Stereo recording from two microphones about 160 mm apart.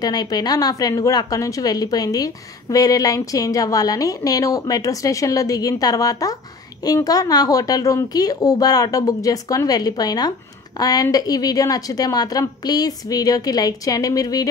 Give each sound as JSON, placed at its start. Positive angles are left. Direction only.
{"t": 0.0, "sound": "a woman's voice", "side_deg": 25}